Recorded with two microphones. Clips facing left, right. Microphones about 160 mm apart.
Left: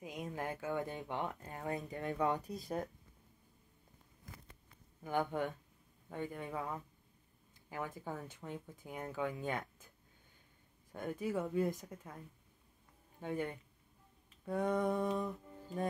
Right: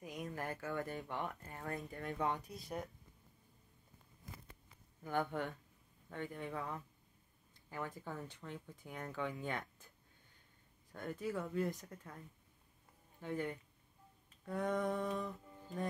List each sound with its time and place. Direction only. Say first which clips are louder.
0.0 s speech: left 2 dB; 20° left (ahead or behind)
2.0 s speech: left 4 dB; 40° left (ahead or behind)
5.0 s speech: left 2 dB; 15° left (ahead or behind)
10.9 s speech: left 3 dB; 15° left (ahead or behind)
13.2 s speech: left 2 dB; 15° left (ahead or behind)